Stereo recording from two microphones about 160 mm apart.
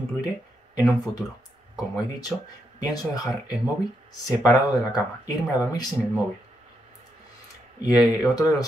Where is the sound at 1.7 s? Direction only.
25° left (ahead or behind).